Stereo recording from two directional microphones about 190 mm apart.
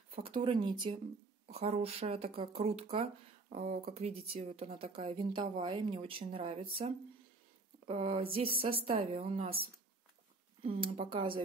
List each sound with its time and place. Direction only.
0.2 s speech: 30° right (ahead or behind)
3.4 s speech: 45° right (ahead or behind); by 9.7 s 30° right (ahead or behind)
11.0 s speech: 30° right (ahead or behind)